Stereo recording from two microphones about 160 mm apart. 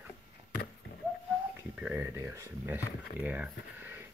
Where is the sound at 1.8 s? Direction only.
10° right (ahead or behind).